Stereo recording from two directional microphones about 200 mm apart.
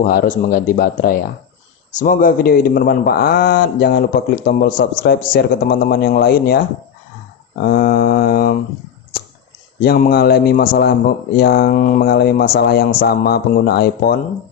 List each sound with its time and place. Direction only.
0.0 s speech: 45° left (ahead or behind)
9.8 s speech: 50° left (ahead or behind)